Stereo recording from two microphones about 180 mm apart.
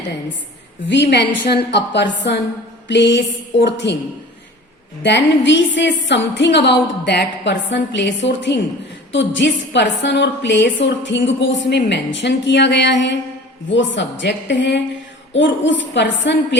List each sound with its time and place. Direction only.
0.9 s a woman's voice: 75° left (ahead or behind)
5.0 s a woman's voice: 80° left
13.7 s a woman's voice: 90° left
15.3 s a woman's voice: 90° left